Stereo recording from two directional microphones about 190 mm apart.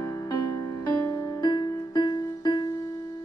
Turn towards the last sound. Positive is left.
turn(degrees=20)  # may be behind; listen again after turning